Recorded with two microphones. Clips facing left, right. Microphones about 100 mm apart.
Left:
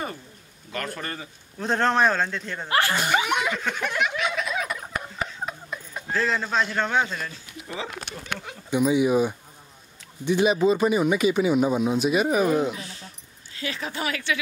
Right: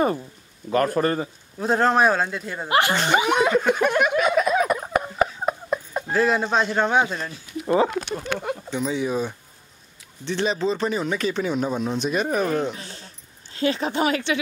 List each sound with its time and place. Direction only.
0.7 s a man's voice: 40° right (ahead or behind)
1.6 s speech: 5° right (ahead or behind)
3.3 s a sound: 40° right (ahead or behind)
6.1 s speech: 15° right (ahead or behind)
7.6 s speech: 45° right (ahead or behind)
8.6 s speech: 10° left (ahead or behind)
12.7 s a sound: 35° right (ahead or behind)
13.5 s speech: 30° right (ahead or behind)